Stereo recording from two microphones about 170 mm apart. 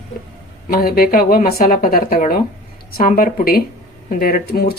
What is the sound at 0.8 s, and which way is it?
Speech, 60° left (ahead or behind).